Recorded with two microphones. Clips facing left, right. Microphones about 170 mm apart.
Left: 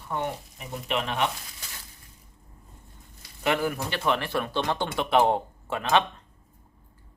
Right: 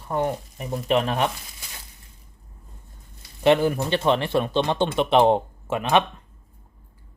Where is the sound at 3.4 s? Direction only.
25° right (ahead or behind).